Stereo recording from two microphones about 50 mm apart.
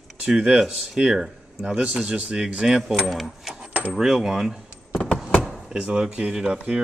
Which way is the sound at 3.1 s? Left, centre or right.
Centre.